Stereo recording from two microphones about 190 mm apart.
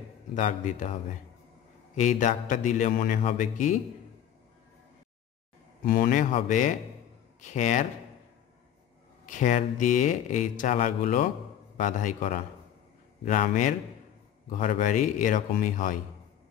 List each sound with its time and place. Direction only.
0.3 s speech: 40° left (ahead or behind)
2.0 s speech: 40° left (ahead or behind)
5.9 s a man's voice: 45° left (ahead or behind)
9.2 s a man's voice: 40° left (ahead or behind)